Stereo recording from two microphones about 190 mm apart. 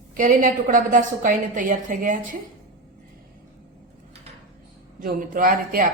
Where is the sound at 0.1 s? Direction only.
45° right (ahead or behind).